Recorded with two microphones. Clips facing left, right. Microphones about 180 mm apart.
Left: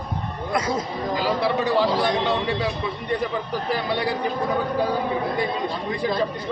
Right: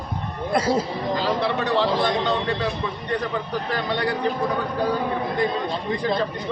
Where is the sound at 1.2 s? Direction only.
10° left (ahead or behind).